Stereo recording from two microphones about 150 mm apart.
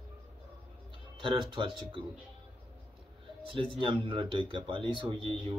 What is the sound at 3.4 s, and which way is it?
Speech, 35° right (ahead or behind).